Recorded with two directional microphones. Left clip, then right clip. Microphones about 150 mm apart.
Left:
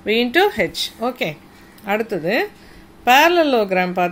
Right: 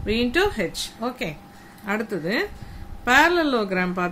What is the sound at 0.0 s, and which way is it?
A woman's voice, 20° left (ahead or behind).